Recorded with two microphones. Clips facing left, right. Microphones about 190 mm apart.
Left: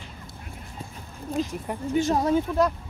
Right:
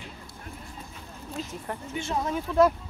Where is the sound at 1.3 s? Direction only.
45° left (ahead or behind).